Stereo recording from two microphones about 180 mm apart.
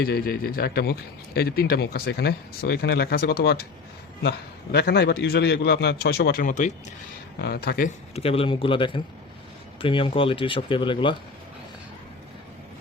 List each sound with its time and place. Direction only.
0.0 s speech: 60° left (ahead or behind)
7.3 s speech: 65° left (ahead or behind)
7.9 s speech: 35° left (ahead or behind)